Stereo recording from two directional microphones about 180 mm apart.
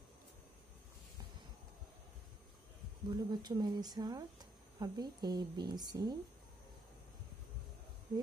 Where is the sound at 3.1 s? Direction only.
25° right (ahead or behind).